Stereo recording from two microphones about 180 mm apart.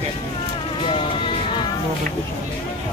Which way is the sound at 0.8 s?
30° left (ahead or behind).